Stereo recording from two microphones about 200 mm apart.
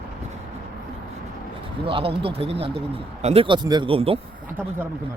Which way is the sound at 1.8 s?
25° right (ahead or behind).